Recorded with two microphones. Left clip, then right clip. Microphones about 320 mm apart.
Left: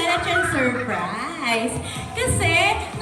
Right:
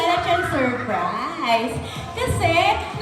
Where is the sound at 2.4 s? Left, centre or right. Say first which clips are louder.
Right 1 dB; centre.